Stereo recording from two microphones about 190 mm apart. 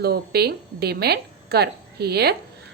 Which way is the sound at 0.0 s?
55° right (ahead or behind).